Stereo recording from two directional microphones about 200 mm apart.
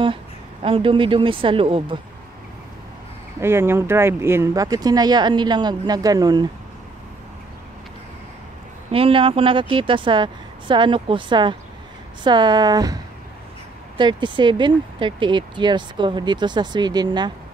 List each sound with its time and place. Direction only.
0.0 s speech: 25° right (ahead or behind)
3.3 s speech: 10° right (ahead or behind)
8.9 s speech: 25° right (ahead or behind)